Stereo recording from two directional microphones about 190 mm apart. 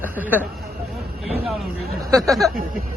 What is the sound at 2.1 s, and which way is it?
Speech, 20° right (ahead or behind).